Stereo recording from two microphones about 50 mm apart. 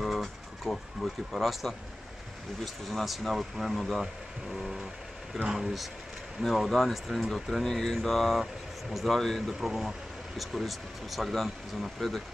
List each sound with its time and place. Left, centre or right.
0.2 s speech: centre